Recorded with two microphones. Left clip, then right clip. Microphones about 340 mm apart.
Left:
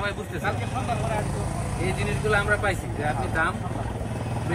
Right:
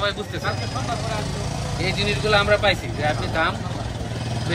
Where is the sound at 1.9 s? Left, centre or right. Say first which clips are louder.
Right 6 dB; right.